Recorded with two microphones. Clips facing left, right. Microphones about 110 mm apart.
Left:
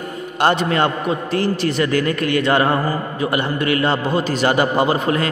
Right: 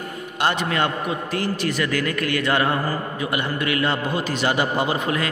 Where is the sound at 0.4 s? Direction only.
35° left (ahead or behind).